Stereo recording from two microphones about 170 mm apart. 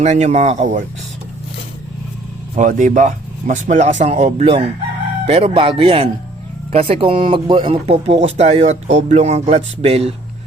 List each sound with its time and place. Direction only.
0.0 s speech: 45° right (ahead or behind)
2.6 s speech: 50° right (ahead or behind)